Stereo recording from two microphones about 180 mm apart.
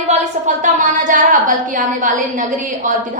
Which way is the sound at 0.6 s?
45° right (ahead or behind).